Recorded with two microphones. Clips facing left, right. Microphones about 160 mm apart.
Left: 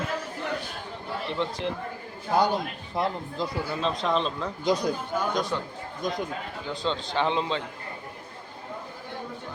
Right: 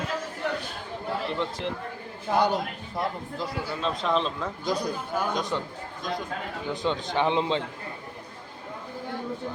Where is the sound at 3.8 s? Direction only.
Centre (ahead or behind).